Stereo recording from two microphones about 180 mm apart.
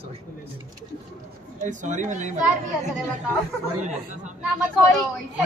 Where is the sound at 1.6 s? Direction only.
45° right (ahead or behind).